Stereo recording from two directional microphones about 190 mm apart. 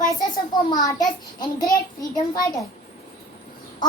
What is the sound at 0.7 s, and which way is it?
A child's voice, 20° left (ahead or behind).